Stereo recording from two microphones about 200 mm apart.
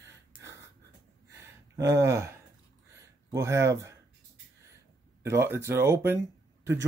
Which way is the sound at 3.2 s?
15° right (ahead or behind).